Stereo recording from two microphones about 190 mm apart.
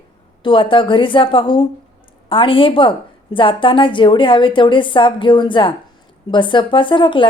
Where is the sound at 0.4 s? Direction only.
25° left (ahead or behind).